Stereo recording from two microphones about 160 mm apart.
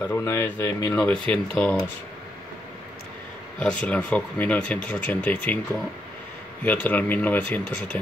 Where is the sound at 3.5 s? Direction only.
5° left (ahead or behind).